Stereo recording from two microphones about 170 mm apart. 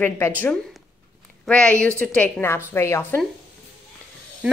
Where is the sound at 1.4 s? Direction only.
5° left (ahead or behind).